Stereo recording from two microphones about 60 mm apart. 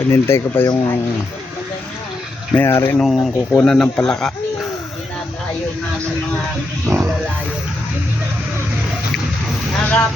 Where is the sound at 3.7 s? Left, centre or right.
Centre.